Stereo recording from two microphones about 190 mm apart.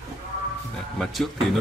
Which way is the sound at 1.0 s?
Centre (ahead or behind).